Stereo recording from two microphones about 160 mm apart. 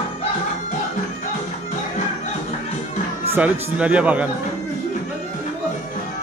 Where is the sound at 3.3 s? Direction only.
10° right (ahead or behind).